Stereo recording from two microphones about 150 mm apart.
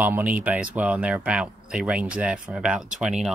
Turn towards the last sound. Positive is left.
turn(degrees=-5)  # may be behind; listen again after turning